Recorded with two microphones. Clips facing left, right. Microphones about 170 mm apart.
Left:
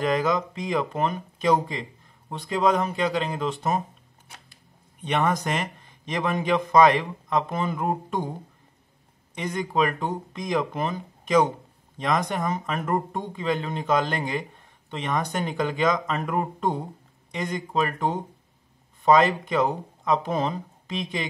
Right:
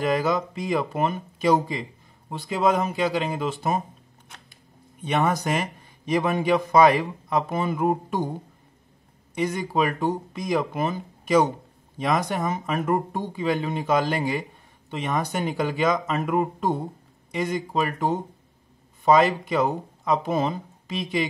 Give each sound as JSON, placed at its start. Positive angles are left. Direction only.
{"t": 0.0, "sound": "speech", "side_deg": -5}
{"t": 5.0, "sound": "a man's voice", "side_deg": -5}
{"t": 9.4, "sound": "a man's voice", "side_deg": -5}